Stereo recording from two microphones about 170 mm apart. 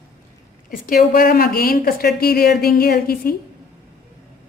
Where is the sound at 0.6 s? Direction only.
55° left (ahead or behind).